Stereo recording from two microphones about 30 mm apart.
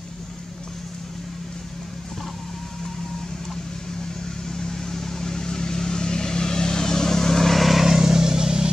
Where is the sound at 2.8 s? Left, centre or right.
Centre.